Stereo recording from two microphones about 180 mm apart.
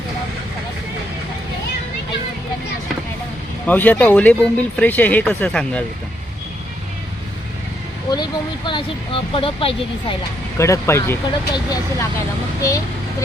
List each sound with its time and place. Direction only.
3.7 s speech: 10° left (ahead or behind)
8.1 s speech: 25° left (ahead or behind)
10.6 s speech: 15° left (ahead or behind)